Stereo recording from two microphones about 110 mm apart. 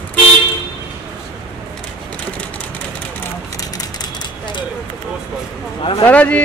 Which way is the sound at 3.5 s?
35° left (ahead or behind).